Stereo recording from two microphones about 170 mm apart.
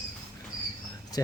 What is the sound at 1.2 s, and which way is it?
Speech, 20° left (ahead or behind).